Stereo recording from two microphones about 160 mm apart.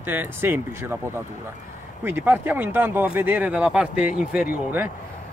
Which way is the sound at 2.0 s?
10° right (ahead or behind).